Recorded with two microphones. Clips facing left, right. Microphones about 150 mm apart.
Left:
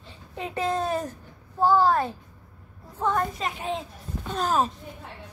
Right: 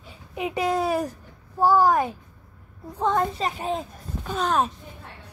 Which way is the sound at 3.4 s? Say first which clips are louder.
Right 3 dB; 35° right (ahead or behind).